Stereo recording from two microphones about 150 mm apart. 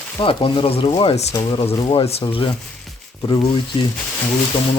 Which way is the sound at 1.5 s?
30° left (ahead or behind).